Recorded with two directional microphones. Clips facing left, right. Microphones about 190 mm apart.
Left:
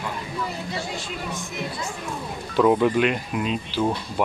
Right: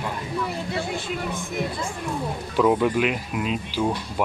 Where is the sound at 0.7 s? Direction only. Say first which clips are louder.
Right 3 dB; 55° right (ahead or behind).